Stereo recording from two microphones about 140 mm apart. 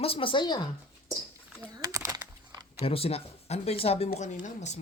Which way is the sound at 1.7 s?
25° right (ahead or behind).